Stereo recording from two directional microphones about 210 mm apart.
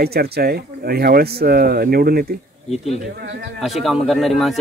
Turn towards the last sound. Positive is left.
turn(degrees=0)  # may be behind; listen again after turning